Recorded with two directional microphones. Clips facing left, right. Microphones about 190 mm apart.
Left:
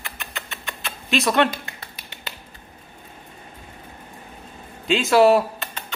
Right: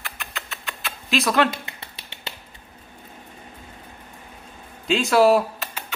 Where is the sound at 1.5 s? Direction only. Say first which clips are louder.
Even; 25° right (ahead or behind).